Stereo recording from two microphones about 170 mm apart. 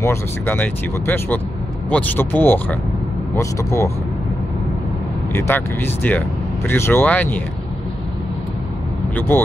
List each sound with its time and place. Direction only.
0.0 s speech: 15° left (ahead or behind)
5.3 s speech: 10° left (ahead or behind)
9.3 s speech: 15° left (ahead or behind)